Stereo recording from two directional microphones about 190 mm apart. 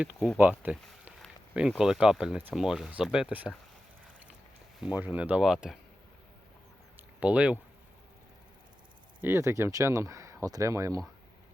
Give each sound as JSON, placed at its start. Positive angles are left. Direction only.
{"t": 0.6, "sound": "speech", "side_deg": -5}
{"t": 4.8, "sound": "speech", "side_deg": -10}
{"t": 7.2, "sound": "speech", "side_deg": -5}
{"t": 9.2, "sound": "speech", "side_deg": -15}